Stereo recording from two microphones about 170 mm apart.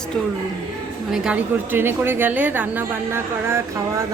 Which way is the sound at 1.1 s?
5° right (ahead or behind).